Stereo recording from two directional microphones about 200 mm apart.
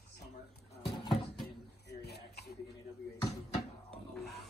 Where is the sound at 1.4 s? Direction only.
55° left (ahead or behind).